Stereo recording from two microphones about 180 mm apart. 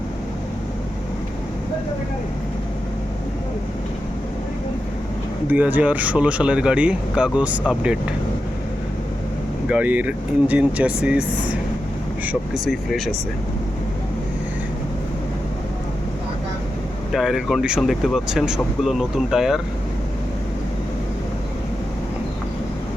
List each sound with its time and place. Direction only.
5.5 s speech: 10° right (ahead or behind)
9.6 s speech: 10° right (ahead or behind)
17.1 s speech: centre (ahead or behind)